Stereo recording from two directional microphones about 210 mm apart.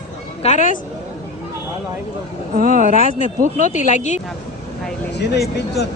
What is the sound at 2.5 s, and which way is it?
Speech, 40° right (ahead or behind).